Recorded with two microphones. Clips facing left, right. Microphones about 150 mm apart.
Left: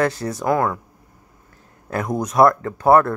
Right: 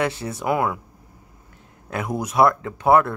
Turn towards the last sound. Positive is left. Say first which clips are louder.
# left 2 dB
turn(degrees=0)  # may be behind; listen again after turning